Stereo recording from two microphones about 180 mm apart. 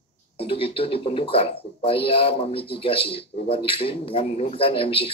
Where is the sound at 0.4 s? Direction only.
30° left (ahead or behind).